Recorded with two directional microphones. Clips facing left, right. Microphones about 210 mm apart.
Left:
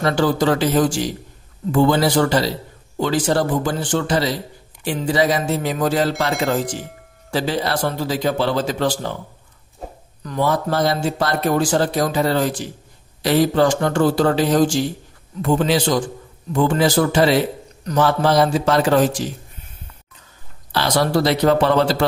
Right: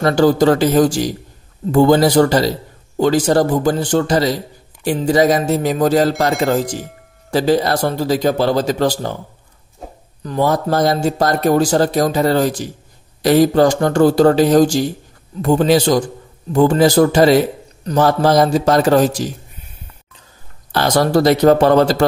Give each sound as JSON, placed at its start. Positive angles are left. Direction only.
{"t": 0.0, "sound": "a man's voice", "side_deg": -40}
{"t": 9.8, "sound": "a sound", "side_deg": 0}
{"t": 10.2, "sound": "a man's voice", "side_deg": -35}
{"t": 20.7, "sound": "speech", "side_deg": -45}